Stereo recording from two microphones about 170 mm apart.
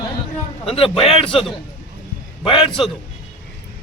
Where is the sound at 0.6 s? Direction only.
35° left (ahead or behind).